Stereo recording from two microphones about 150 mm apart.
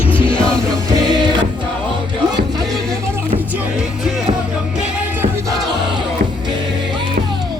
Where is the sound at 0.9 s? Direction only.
25° right (ahead or behind).